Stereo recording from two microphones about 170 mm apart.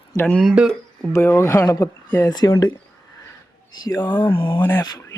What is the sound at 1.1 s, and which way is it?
Speech, 15° left (ahead or behind).